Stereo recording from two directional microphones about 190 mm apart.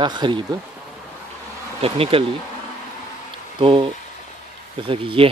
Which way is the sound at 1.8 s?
30° right (ahead or behind).